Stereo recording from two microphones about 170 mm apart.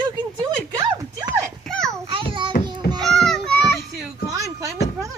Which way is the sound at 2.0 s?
30° right (ahead or behind).